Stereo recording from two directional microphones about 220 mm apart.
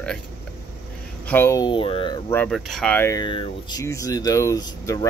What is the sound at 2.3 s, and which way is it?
Speech, 5° left (ahead or behind).